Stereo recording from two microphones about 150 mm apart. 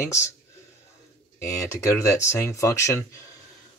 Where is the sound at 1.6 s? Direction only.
20° left (ahead or behind).